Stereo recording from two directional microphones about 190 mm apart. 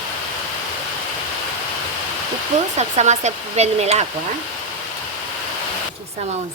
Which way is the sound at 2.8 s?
35° right (ahead or behind).